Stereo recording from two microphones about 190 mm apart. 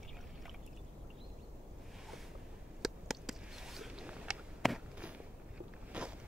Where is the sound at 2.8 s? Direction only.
Centre (ahead or behind).